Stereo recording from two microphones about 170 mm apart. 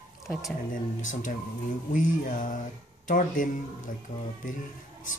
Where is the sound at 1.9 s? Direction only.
50° left (ahead or behind).